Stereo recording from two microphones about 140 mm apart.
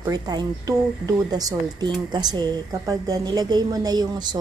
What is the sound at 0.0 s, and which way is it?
A woman's voice, 30° right (ahead or behind).